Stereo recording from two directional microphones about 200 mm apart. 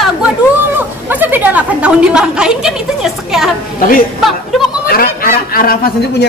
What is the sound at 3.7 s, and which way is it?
A man's voice, 45° left (ahead or behind).